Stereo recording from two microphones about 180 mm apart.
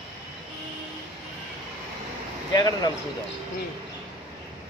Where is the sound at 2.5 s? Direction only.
25° left (ahead or behind).